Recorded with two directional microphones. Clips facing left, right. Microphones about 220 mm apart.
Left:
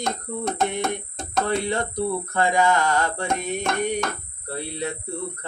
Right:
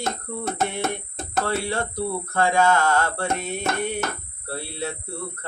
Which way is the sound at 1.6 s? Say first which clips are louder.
Left 2 dB; 20° left (ahead or behind).